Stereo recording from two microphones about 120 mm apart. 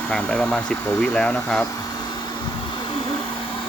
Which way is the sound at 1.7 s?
35° left (ahead or behind).